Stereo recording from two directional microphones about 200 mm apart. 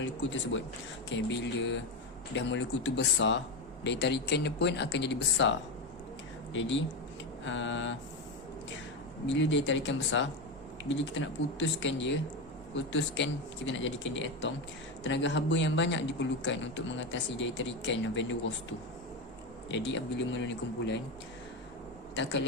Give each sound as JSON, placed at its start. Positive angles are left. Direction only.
{"t": 0.0, "sound": "a man's voice", "side_deg": 70}
{"t": 9.2, "sound": "a man's voice", "side_deg": 65}
{"t": 19.6, "sound": "speech", "side_deg": 65}
{"t": 22.1, "sound": "speech", "side_deg": 65}